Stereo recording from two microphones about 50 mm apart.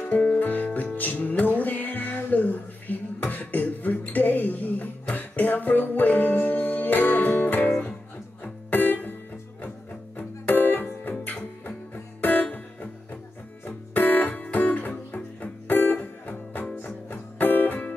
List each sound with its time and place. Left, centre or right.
0.1 s music: left
0.7 s music: left
0.9 s music: left
10.1 s music: left
13.7 s music: left